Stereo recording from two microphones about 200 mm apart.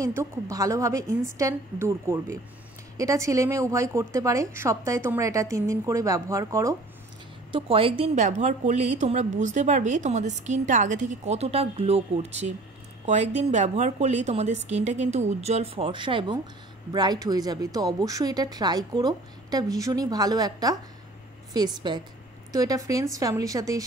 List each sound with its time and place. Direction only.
0.0 s a woman's voice: 15° right (ahead or behind)
7.5 s a woman's voice: 25° right (ahead or behind)